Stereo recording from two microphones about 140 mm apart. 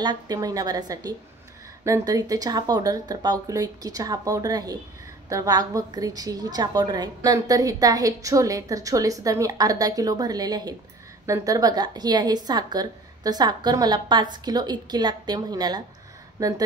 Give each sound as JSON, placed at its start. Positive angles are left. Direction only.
{"t": 0.0, "sound": "a woman's voice", "side_deg": -30}